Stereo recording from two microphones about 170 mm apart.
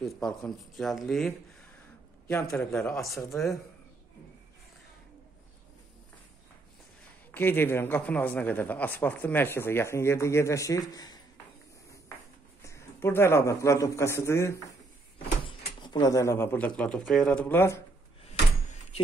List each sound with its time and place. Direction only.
0.0 s speech: centre (ahead or behind)
7.3 s speech: 10° left (ahead or behind)
12.6 s a man's voice: 15° left (ahead or behind)